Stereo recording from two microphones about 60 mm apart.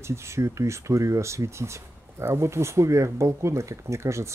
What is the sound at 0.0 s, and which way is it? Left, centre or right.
Speech, right.